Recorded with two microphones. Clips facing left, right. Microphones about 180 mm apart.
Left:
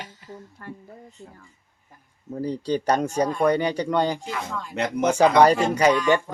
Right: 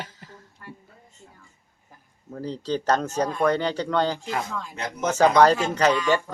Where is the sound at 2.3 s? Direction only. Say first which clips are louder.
Left 3 dB; 10° left (ahead or behind).